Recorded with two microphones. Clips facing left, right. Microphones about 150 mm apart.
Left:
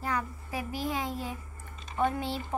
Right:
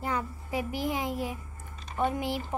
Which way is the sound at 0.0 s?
20° right (ahead or behind).